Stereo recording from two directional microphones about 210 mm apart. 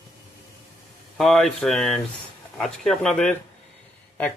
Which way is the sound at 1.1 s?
Centre (ahead or behind).